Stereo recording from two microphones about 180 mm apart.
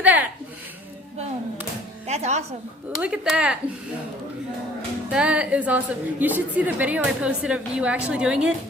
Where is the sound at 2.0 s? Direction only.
40° right (ahead or behind).